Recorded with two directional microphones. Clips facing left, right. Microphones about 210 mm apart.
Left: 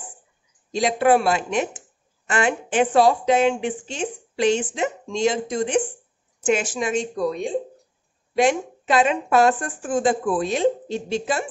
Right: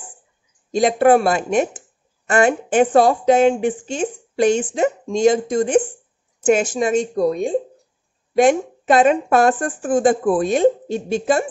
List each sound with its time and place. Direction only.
0.7 s a woman's voice: 50° right (ahead or behind)